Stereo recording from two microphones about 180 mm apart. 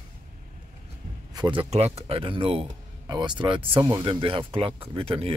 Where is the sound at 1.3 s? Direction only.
25° right (ahead or behind).